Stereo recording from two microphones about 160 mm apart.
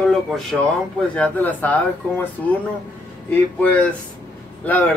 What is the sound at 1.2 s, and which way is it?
Speech, 10° left (ahead or behind).